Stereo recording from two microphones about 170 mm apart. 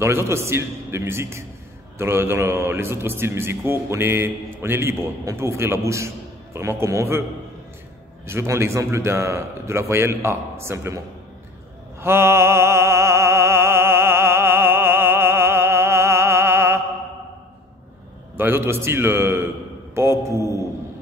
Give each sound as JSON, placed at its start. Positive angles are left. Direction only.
{"t": 0.0, "sound": "a man's voice", "side_deg": -15}
{"t": 8.3, "sound": "a man's voice", "side_deg": -15}
{"t": 12.0, "sound": "music", "side_deg": -15}
{"t": 18.3, "sound": "a man's voice", "side_deg": -10}